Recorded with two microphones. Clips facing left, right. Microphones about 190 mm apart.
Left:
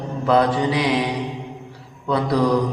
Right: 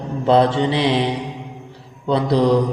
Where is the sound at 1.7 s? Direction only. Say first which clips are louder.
Right 3 dB; 25° right (ahead or behind).